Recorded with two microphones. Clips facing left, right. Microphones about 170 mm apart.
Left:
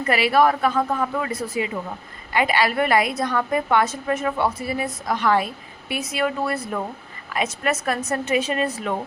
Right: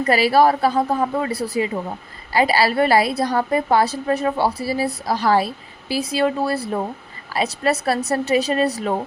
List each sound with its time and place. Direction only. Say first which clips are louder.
0.1 s a woman's voice: right 2 dB; 35° right (ahead or behind)